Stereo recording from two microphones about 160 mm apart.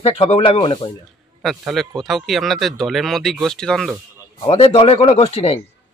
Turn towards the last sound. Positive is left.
turn(degrees=40)  # may be behind; listen again after turning